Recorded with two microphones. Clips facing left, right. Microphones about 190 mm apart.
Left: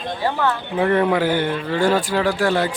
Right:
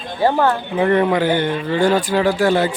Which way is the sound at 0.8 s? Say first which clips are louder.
Right 2 dB; centre (ahead or behind).